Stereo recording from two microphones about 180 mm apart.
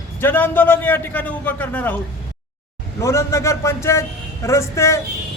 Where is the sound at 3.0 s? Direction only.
15° left (ahead or behind).